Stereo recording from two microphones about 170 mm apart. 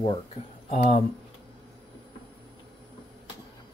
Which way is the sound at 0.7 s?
45° left (ahead or behind).